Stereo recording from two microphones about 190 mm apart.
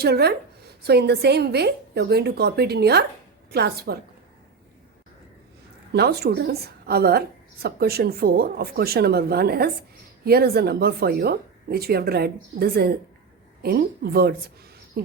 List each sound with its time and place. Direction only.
0.0 s a woman's voice: 60° right (ahead or behind)
5.9 s a woman's voice: 60° right (ahead or behind)